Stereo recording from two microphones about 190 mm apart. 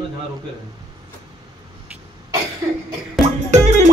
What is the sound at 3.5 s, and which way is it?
Music, 40° right (ahead or behind).